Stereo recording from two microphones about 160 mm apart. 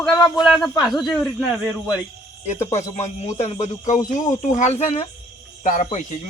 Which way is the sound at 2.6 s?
45° left (ahead or behind).